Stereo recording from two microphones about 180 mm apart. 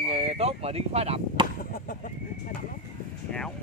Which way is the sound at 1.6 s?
50° left (ahead or behind).